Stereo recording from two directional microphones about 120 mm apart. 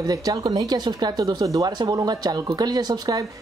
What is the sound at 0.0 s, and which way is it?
Speech, 30° right (ahead or behind).